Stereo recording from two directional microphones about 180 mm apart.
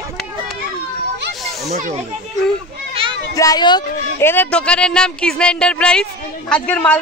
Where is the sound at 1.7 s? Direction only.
45° right (ahead or behind).